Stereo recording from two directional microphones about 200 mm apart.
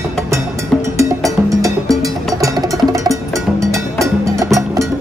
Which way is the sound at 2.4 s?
15° right (ahead or behind).